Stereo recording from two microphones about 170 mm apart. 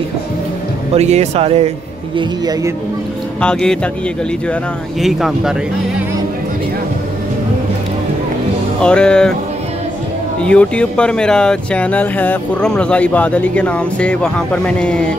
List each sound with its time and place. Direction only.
0.9 s speech: 40° right (ahead or behind)
2.1 s speech: 25° right (ahead or behind)
3.3 s speech: 5° left (ahead or behind)
5.0 s speech: centre (ahead or behind)
8.8 s speech: 5° left (ahead or behind)
10.4 s speech: 5° left (ahead or behind)